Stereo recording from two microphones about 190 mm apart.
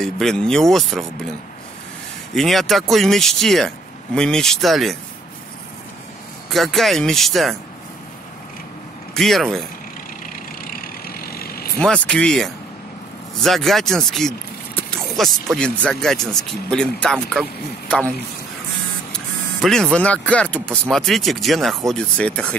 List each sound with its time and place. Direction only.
0.0 s speech: 5° left (ahead or behind)
2.3 s speech: centre (ahead or behind)
6.5 s speech: centre (ahead or behind)
9.1 s speech: centre (ahead or behind)
10.6 s vehicle: 50° left (ahead or behind)
11.8 s speech: 5° left (ahead or behind)
14.9 s a sound: centre (ahead or behind)
15.5 s speech: 5° left (ahead or behind)
19.1 s speech: 5° left (ahead or behind)